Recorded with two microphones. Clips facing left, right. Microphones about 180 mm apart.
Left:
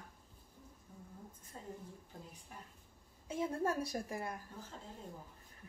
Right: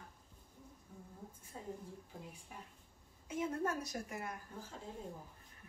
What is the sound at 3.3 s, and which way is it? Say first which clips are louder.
Speech: left 1 dB; 30° left (ahead or behind).